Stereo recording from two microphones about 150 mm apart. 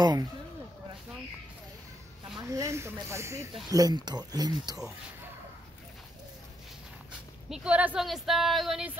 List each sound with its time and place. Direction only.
2.5 s speech: 20° right (ahead or behind)
7.4 s speech: 5° right (ahead or behind)